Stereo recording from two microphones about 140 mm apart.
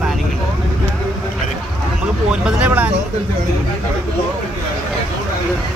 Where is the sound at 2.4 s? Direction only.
10° right (ahead or behind).